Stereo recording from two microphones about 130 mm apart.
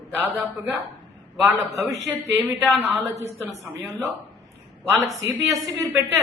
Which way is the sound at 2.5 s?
5° right (ahead or behind).